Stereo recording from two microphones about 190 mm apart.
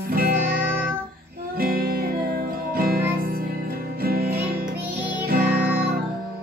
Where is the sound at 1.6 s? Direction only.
50° right (ahead or behind).